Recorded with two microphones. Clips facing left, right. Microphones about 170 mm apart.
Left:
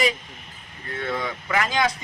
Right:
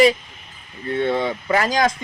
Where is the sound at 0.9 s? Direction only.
25° right (ahead or behind).